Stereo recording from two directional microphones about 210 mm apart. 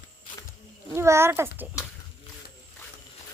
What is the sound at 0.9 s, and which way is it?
Speech, 10° right (ahead or behind).